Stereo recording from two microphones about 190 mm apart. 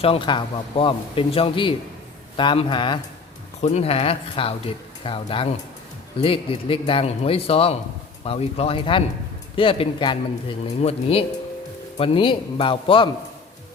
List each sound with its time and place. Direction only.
0.0 s a man's voice: 30° left (ahead or behind)
3.6 s a man's voice: 35° left (ahead or behind)